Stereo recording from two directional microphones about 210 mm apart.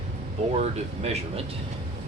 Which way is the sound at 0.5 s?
30° right (ahead or behind).